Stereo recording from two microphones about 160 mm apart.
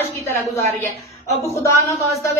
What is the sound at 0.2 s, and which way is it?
Speech, 15° left (ahead or behind).